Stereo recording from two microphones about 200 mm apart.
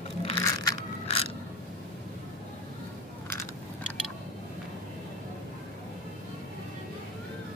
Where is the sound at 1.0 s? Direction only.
30° left (ahead or behind).